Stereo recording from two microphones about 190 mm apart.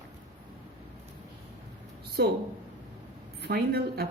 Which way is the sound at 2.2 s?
60° right (ahead or behind).